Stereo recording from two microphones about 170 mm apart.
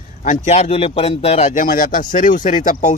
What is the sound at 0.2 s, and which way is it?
Speech, 45° left (ahead or behind).